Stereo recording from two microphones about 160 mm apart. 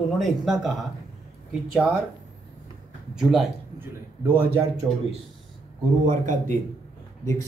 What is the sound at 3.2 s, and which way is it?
Speech, centre (ahead or behind).